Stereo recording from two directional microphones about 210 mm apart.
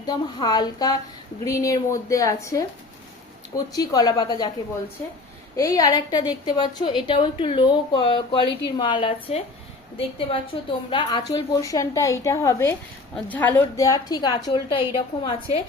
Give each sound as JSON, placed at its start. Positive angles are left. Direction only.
{"t": 0.0, "sound": "a woman's voice", "side_deg": 20}
{"t": 3.7, "sound": "a woman's voice", "side_deg": 20}
{"t": 5.5, "sound": "a woman's voice", "side_deg": 15}